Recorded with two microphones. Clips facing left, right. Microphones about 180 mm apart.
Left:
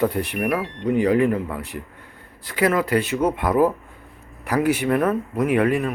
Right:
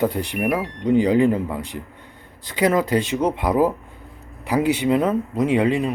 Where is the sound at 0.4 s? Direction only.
20° right (ahead or behind).